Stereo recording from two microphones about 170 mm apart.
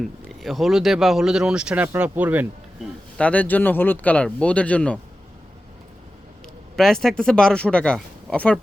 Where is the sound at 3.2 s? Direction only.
10° left (ahead or behind).